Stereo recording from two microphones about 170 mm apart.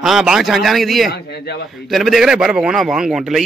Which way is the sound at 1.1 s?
75° left (ahead or behind).